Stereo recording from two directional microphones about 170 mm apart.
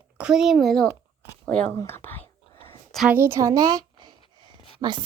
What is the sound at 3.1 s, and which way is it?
A woman's voice, 15° right (ahead or behind).